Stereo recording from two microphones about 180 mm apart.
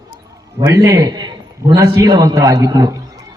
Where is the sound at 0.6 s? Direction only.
20° right (ahead or behind).